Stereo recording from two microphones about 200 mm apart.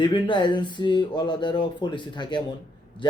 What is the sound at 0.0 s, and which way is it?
Speech, 25° left (ahead or behind).